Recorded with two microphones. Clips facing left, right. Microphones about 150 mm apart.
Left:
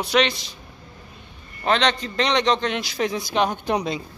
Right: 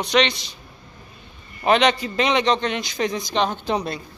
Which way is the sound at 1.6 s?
10° right (ahead or behind).